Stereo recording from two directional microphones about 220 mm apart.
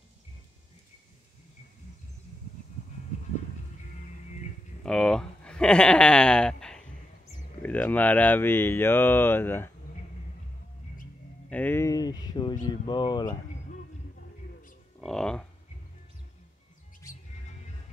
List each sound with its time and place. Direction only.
4.8 s speech: 5° left (ahead or behind)
11.5 s speech: 10° left (ahead or behind)
15.0 s speech: 5° left (ahead or behind)